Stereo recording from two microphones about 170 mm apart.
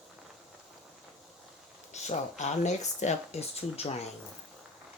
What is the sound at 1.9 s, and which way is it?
Speech, 40° left (ahead or behind).